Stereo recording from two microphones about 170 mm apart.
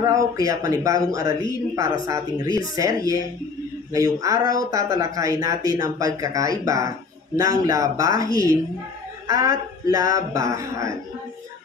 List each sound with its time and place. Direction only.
0.0 s speech: 20° right (ahead or behind)
2.4 s speech: 25° left (ahead or behind)
2.8 s speech: 20° right (ahead or behind)